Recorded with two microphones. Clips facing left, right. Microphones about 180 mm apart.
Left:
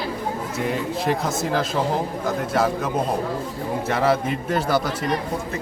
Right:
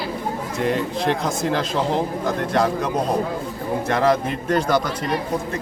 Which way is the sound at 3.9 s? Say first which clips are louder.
Right 1 dB; 5° left (ahead or behind).